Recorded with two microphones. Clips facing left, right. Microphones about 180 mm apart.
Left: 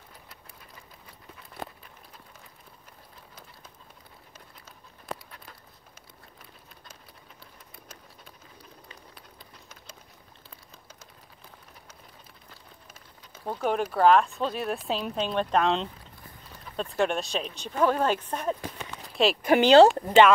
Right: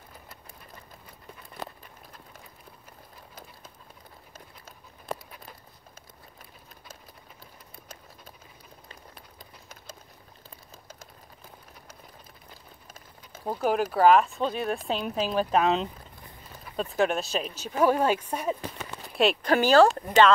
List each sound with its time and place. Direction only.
5.0 s dog: 10° right (ahead or behind)
13.5 s speech: 5° right (ahead or behind)
19.4 s speech: 15° left (ahead or behind)